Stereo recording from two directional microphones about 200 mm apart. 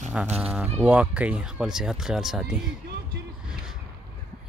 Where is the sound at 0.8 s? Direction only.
5° right (ahead or behind).